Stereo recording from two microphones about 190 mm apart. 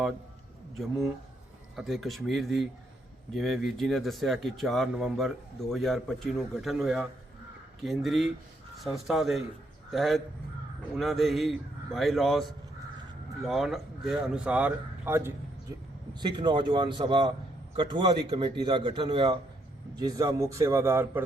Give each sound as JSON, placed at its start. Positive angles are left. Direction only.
{"t": 1.7, "sound": "a man's voice", "side_deg": 0}
{"t": 16.1, "sound": "a man's voice", "side_deg": -25}